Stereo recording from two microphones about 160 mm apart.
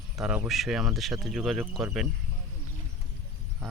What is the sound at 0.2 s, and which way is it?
Speech, 5° right (ahead or behind).